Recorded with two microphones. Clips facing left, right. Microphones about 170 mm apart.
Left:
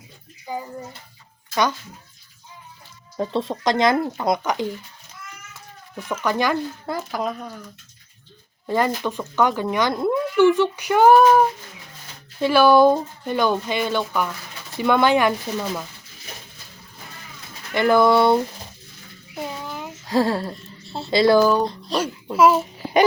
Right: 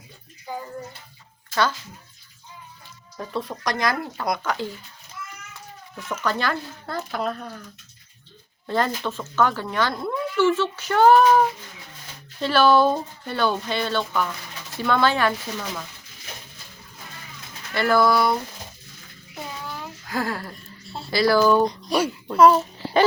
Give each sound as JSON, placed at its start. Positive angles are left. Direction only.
{"t": 0.5, "sound": "speech", "side_deg": 15}
{"t": 3.2, "sound": "speech", "side_deg": 25}
{"t": 6.1, "sound": "speech", "side_deg": 15}
{"t": 8.6, "sound": "speech", "side_deg": 10}
{"t": 12.4, "sound": "speech", "side_deg": 10}
{"t": 17.7, "sound": "speech", "side_deg": 20}
{"t": 19.6, "sound": "a sound", "side_deg": 20}
{"t": 21.6, "sound": "speech", "side_deg": -20}
{"t": 22.3, "sound": "a child's voice", "side_deg": 5}